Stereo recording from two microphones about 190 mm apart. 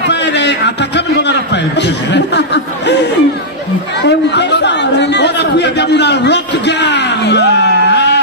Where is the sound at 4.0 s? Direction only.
65° left (ahead or behind).